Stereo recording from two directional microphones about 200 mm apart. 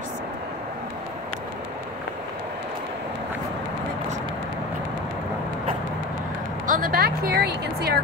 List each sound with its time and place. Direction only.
6.7 s speech: 45° right (ahead or behind)